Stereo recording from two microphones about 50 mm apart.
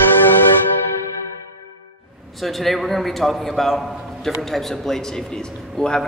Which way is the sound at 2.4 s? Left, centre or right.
Centre.